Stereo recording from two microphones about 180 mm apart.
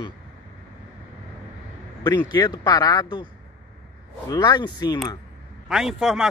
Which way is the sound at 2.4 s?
20° left (ahead or behind).